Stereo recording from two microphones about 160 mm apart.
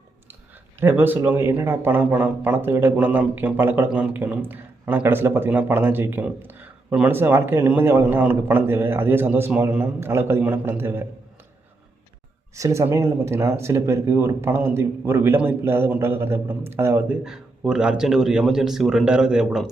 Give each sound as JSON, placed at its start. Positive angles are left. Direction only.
{"t": 0.8, "sound": "speech", "side_deg": -15}
{"t": 12.5, "sound": "speech", "side_deg": -20}
{"t": 17.2, "sound": "speech", "side_deg": -5}